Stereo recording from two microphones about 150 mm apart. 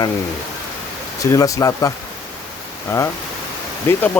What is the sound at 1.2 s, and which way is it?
Speech, 20° left (ahead or behind).